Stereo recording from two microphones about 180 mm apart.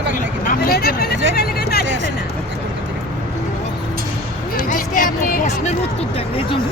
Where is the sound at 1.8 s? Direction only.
90° right.